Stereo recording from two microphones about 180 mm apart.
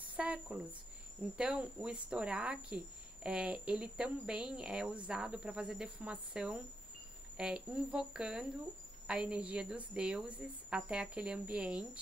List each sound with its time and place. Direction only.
0.0 s speech: 5° right (ahead or behind)